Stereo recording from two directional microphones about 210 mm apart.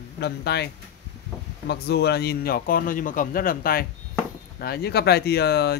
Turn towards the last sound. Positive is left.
turn(degrees=50)  # may be behind; listen again after turning